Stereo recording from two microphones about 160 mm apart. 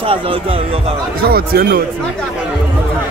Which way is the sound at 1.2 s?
70° right (ahead or behind).